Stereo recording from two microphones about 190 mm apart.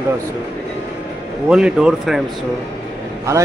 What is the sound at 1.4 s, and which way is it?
Speech, 5° right (ahead or behind).